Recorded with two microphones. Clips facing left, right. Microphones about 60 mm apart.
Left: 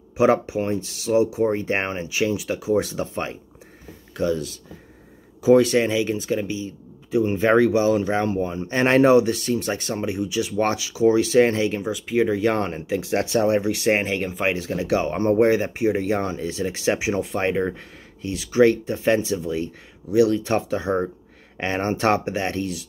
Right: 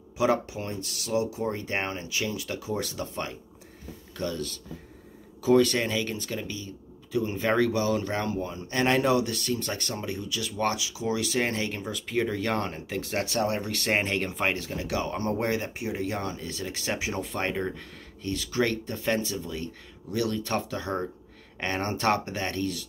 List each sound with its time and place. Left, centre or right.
0.2 s speech: left
10.5 s speech: left
11.8 s speech: centre; by 12.8 s left
12.9 s speech: centre
14.4 s speech: centre
14.8 s speech: left